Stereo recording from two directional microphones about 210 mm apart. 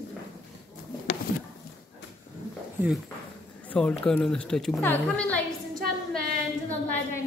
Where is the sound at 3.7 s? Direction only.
5° left (ahead or behind).